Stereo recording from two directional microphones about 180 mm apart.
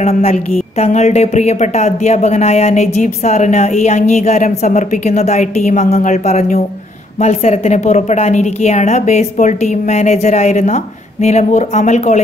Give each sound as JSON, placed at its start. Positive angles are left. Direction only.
{"t": 0.0, "sound": "speech", "side_deg": 35}